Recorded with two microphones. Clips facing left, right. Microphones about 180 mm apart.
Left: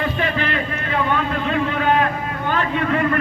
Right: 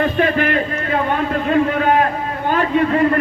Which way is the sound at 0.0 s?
50° right (ahead or behind).